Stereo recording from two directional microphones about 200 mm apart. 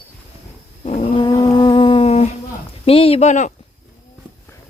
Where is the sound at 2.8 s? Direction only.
30° left (ahead or behind).